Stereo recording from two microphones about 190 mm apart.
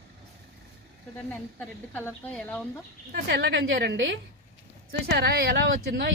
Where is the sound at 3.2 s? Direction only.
65° right (ahead or behind).